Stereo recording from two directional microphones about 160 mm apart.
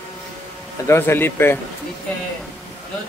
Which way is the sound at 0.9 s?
15° left (ahead or behind).